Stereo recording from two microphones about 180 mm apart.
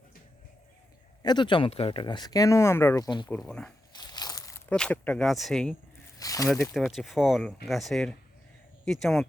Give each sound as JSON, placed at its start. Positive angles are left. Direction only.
{"t": 1.2, "sound": "speech", "side_deg": 25}
{"t": 3.2, "sound": "speech", "side_deg": 5}
{"t": 3.9, "sound": "a sound", "side_deg": 20}
{"t": 4.7, "sound": "speech", "side_deg": 5}
{"t": 6.1, "sound": "a sound", "side_deg": 20}
{"t": 6.5, "sound": "speech", "side_deg": 0}